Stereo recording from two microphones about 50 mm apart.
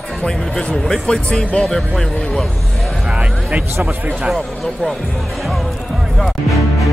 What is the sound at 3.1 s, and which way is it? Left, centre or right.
Speech, right.